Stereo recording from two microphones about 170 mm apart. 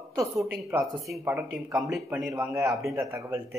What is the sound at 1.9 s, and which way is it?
Speech, centre (ahead or behind).